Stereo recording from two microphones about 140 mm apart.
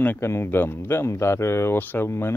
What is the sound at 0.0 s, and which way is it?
Speech, 15° left (ahead or behind).